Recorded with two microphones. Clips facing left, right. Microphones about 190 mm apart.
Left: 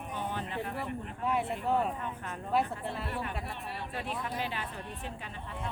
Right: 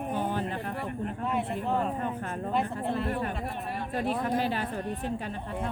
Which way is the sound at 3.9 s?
45° right (ahead or behind).